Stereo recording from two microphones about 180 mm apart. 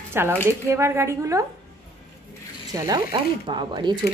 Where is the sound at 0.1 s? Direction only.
10° right (ahead or behind).